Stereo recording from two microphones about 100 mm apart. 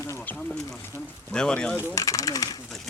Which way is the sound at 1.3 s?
10° left (ahead or behind).